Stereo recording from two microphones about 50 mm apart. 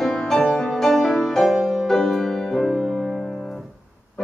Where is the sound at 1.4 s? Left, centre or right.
Centre.